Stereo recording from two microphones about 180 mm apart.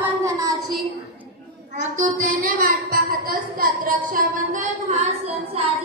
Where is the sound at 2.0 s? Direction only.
50° right (ahead or behind).